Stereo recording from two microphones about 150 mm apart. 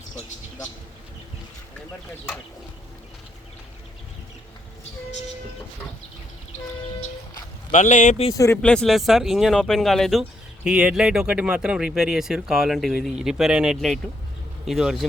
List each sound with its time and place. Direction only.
7.7 s speech: 55° left (ahead or behind)
8.3 s speech: 20° left (ahead or behind)
8.6 s speech: 5° left (ahead or behind)